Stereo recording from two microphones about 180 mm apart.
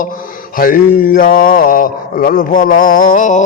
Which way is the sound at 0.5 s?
50° left (ahead or behind).